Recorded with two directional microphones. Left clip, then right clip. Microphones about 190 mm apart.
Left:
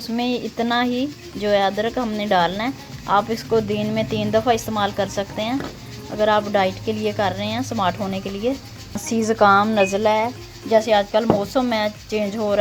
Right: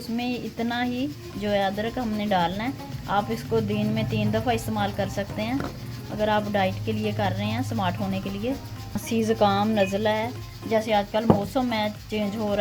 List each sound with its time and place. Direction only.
0.2 s speech: 35° left (ahead or behind)
9.2 s a woman's voice: 20° left (ahead or behind)